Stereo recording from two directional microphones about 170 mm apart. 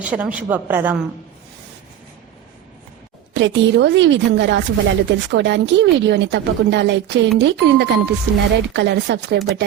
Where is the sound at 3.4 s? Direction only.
90° right.